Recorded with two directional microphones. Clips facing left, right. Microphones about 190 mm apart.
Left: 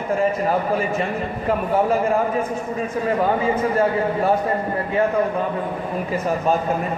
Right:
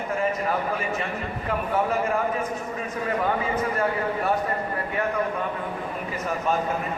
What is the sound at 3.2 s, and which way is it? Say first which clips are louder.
A man's voice: left 5 dB; 30° left (ahead or behind).